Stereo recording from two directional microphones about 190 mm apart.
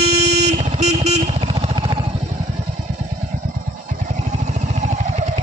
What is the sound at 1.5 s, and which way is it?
Vehicle, 25° right (ahead or behind).